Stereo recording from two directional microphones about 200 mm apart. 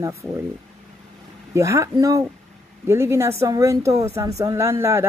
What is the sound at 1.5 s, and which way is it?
Speech, 15° right (ahead or behind).